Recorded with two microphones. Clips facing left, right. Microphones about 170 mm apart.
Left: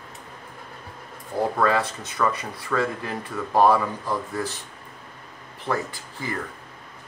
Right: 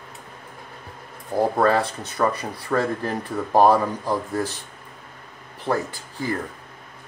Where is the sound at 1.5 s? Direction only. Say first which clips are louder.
Right 3 dB; 35° right (ahead or behind).